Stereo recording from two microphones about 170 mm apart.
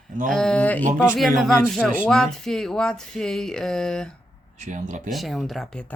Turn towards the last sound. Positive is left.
turn(degrees=0)  # may be behind; listen again after turning